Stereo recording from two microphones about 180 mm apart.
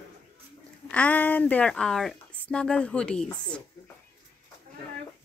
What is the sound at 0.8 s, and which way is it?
Speech, 5° left (ahead or behind).